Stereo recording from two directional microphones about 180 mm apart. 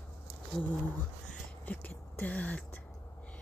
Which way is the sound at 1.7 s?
10° left (ahead or behind).